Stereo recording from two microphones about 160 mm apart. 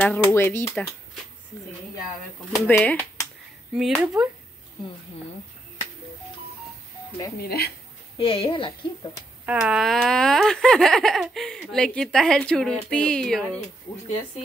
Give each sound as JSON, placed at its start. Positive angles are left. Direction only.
{"t": 0.0, "sound": "speech", "side_deg": 10}
{"t": 2.6, "sound": "speech", "side_deg": 10}
{"t": 3.7, "sound": "speech", "side_deg": -5}
{"t": 7.3, "sound": "speech", "side_deg": 75}
{"t": 8.2, "sound": "a woman's voice", "side_deg": 35}
{"t": 9.5, "sound": "speech", "side_deg": -5}